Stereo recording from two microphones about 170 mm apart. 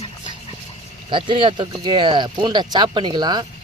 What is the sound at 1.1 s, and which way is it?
Speech, 30° right (ahead or behind).